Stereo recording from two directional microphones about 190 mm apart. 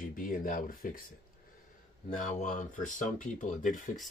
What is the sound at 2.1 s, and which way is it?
Speech, 40° left (ahead or behind).